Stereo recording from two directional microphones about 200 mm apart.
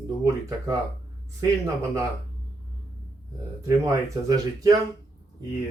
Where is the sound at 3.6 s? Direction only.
15° right (ahead or behind).